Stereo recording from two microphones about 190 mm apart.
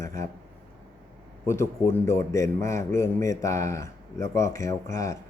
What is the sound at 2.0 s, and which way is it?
Speech, 15° left (ahead or behind).